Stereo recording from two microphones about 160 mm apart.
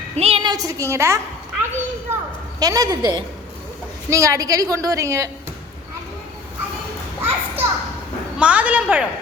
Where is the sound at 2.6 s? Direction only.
25° right (ahead or behind).